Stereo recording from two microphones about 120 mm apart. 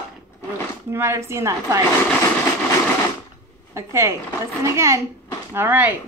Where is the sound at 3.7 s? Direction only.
20° right (ahead or behind).